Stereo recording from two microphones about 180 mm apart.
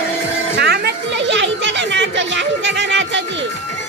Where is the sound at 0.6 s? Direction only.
65° right (ahead or behind); by 3.2 s 80° right.